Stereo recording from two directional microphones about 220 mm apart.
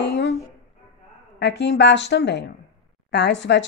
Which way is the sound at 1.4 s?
50° left (ahead or behind).